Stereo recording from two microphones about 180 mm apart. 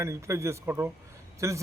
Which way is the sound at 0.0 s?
15° right (ahead or behind).